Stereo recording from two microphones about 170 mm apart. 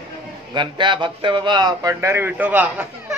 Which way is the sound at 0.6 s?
25° right (ahead or behind).